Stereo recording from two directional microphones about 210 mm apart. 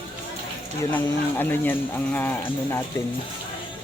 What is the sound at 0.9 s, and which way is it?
Speech, 10° left (ahead or behind).